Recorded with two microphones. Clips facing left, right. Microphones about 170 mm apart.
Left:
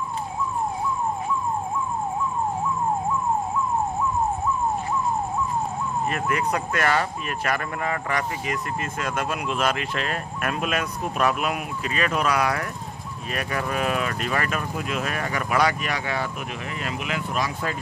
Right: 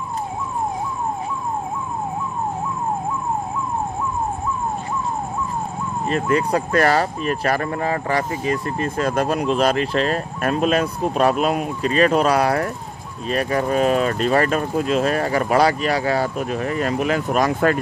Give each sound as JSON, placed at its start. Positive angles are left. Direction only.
{"t": 6.0, "sound": "speech", "side_deg": -30}